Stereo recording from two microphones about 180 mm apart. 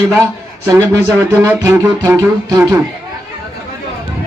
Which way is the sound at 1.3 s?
15° right (ahead or behind).